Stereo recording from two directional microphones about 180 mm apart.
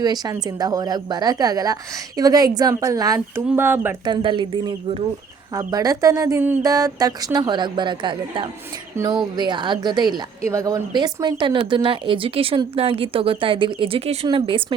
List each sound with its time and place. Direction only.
0.0 s speech: 20° right (ahead or behind)
4.0 s speech: 25° right (ahead or behind)